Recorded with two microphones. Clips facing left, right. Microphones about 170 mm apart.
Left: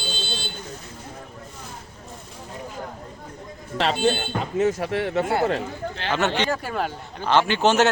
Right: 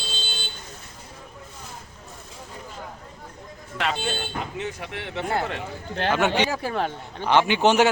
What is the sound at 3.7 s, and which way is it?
Speech, 35° left (ahead or behind).